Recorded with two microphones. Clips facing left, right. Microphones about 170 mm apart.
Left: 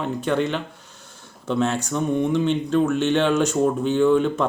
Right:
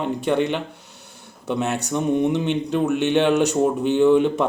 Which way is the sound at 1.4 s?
15° right (ahead or behind).